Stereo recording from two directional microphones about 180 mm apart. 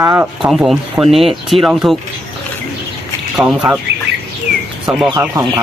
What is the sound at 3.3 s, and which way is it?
Speech, 5° right (ahead or behind).